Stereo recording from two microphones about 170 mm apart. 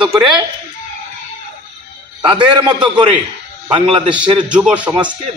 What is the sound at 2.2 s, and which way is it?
Speech, 5° right (ahead or behind).